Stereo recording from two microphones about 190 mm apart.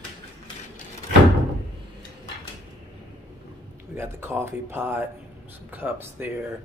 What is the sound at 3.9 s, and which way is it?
Speech, 10° right (ahead or behind).